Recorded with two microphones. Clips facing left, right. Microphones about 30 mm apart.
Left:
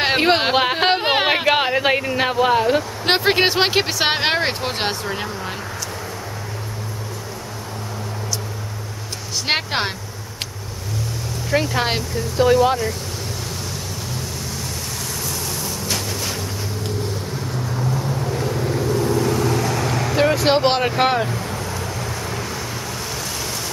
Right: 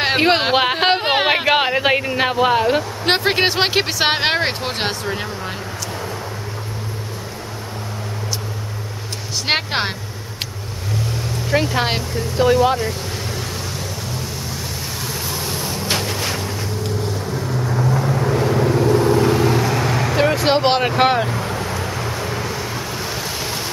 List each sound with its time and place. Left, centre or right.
0.0 s speech: centre
9.5 s speech: centre
11.5 s speech: centre
15.6 s a sound: right
17.5 s vehicle: centre